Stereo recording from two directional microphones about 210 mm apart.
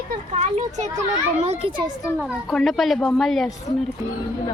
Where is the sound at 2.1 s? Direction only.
Centre (ahead or behind).